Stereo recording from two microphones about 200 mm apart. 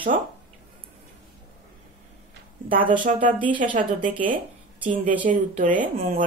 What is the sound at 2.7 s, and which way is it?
Speech, 25° right (ahead or behind).